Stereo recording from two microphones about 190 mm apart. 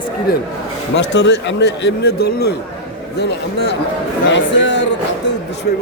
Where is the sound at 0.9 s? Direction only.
65° left (ahead or behind).